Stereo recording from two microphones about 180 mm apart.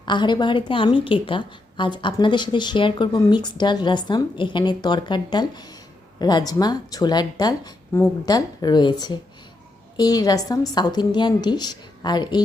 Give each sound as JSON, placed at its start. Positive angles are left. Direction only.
{"t": 0.0, "sound": "a woman's voice", "side_deg": 25}